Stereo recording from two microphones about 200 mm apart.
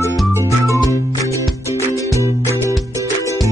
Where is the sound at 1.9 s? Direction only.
15° left (ahead or behind).